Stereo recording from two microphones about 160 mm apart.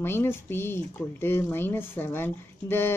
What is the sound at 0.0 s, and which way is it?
Speech, 15° left (ahead or behind).